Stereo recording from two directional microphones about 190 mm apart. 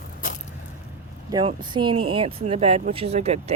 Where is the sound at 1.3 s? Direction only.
25° right (ahead or behind).